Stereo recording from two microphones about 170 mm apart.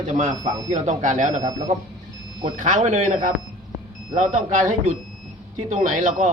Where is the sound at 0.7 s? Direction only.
45° right (ahead or behind).